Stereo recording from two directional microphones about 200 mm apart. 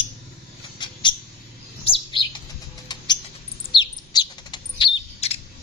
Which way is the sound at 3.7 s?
20° left (ahead or behind).